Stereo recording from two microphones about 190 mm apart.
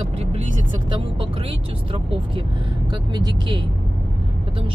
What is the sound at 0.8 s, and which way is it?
Speech, 25° right (ahead or behind).